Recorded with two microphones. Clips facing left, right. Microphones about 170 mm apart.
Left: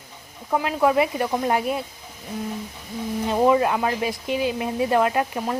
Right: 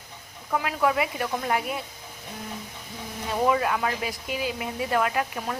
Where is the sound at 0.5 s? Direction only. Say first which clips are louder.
Left 5 dB; 25° left (ahead or behind).